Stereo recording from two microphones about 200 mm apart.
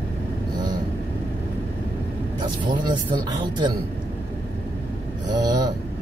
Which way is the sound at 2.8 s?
20° right (ahead or behind).